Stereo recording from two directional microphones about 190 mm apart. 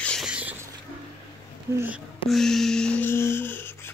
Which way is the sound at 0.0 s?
Centre (ahead or behind).